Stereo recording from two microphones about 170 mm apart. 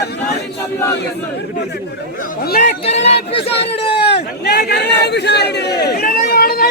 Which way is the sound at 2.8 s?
40° left (ahead or behind).